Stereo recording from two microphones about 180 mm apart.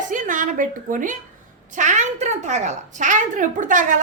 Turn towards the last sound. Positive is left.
turn(degrees=-45)  # may be behind; listen again after turning